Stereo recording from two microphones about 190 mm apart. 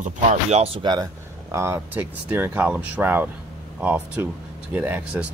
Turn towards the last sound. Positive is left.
turn(degrees=-10)  # may be behind; listen again after turning